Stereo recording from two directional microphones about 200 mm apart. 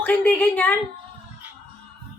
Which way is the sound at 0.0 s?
10° left (ahead or behind).